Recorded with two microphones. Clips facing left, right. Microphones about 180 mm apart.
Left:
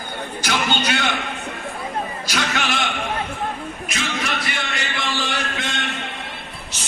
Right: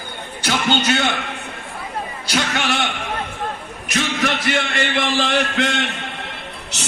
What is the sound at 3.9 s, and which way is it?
Speech, 65° right (ahead or behind).